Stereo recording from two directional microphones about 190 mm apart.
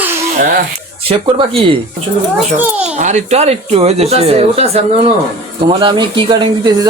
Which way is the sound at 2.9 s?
35° right (ahead or behind).